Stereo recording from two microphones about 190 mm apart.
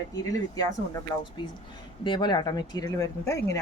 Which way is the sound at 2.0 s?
25° left (ahead or behind).